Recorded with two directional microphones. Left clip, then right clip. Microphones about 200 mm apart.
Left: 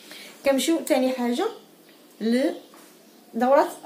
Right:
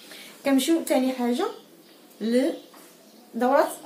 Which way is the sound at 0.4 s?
40° left (ahead or behind).